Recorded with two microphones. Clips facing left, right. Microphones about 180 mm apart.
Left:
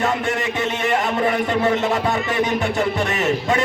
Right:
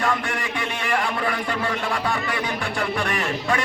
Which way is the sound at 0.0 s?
25° left (ahead or behind).